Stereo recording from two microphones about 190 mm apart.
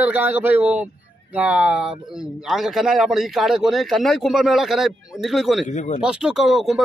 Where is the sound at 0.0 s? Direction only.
10° right (ahead or behind).